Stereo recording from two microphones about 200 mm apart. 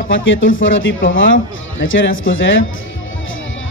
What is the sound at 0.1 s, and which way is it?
A man's voice, 70° left (ahead or behind).